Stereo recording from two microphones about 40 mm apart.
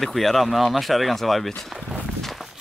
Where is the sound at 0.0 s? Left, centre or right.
Centre.